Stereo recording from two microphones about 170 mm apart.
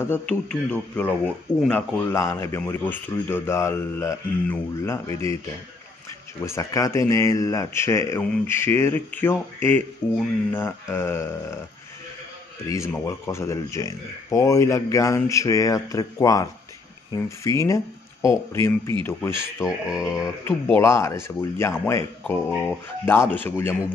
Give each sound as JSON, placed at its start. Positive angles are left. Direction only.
{"t": 0.0, "sound": "speech", "side_deg": 10}
{"t": 6.4, "sound": "speech", "side_deg": 15}
{"t": 12.6, "sound": "speech", "side_deg": 20}
{"t": 19.6, "sound": "a sound", "side_deg": -5}
{"t": 20.1, "sound": "speech", "side_deg": 20}